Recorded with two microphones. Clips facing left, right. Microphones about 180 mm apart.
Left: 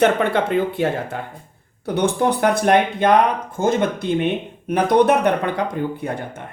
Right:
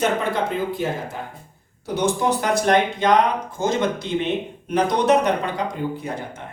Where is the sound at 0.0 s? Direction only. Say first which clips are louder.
Left 5 dB; 65° left (ahead or behind).